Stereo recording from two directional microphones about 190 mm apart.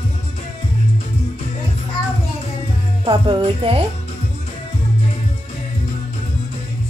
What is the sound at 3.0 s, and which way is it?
Speech, 25° right (ahead or behind).